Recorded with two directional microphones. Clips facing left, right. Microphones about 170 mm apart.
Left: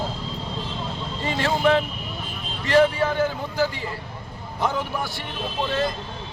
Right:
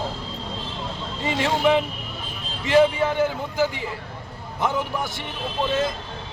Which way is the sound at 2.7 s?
15° right (ahead or behind).